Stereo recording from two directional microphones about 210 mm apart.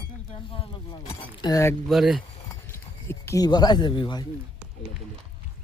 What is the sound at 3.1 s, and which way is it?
Speech, 15° left (ahead or behind).